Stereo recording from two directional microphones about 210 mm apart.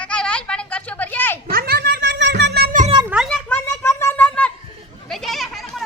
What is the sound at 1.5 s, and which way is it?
Cat, 45° right (ahead or behind).